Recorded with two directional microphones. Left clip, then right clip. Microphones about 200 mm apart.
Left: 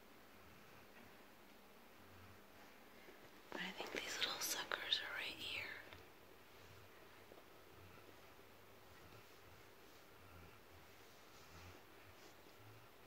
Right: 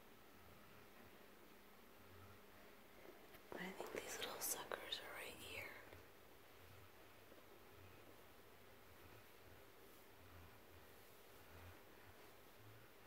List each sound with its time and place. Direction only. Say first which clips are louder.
3.5 s whispering: left 4 dB; 20° right (ahead or behind)